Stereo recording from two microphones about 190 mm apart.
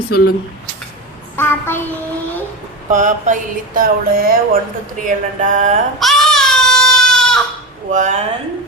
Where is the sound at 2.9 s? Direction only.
40° right (ahead or behind).